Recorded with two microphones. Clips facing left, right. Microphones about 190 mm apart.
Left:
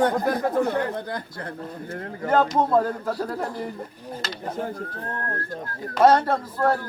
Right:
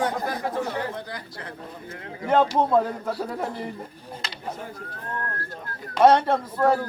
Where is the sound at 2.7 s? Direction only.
5° right (ahead or behind).